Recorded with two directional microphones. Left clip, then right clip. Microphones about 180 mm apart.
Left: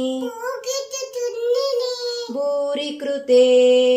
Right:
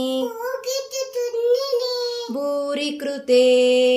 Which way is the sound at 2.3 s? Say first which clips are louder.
Left 3 dB; 30° right (ahead or behind).